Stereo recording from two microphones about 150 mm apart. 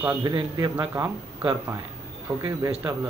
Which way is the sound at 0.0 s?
20° right (ahead or behind).